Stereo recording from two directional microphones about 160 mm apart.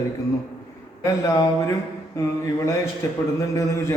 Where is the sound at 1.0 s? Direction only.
20° left (ahead or behind).